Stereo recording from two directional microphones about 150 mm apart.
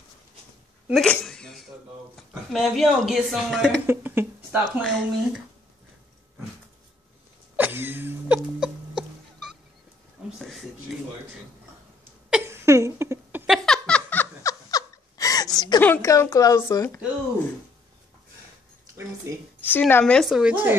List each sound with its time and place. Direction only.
0.9 s speech: 5° left (ahead or behind)
3.8 s speech: 15° right (ahead or behind)
4.8 s speech: centre (ahead or behind)
7.5 s a sound: 15° right (ahead or behind)
10.2 s a sound: 5° right (ahead or behind)
12.4 s a sound: 20° right (ahead or behind)
13.5 s laughter: 5° left (ahead or behind); by 15.8 s 25° left (ahead or behind)
15.8 s a woman's voice: 15° left (ahead or behind)
19.6 s a woman's voice: 10° left (ahead or behind)
20.2 s speech: 5° right (ahead or behind)